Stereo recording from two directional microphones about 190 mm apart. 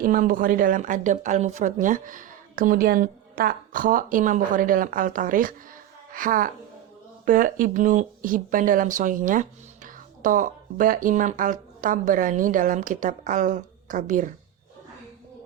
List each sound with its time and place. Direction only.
0.0 s a woman's voice: 45° right (ahead or behind)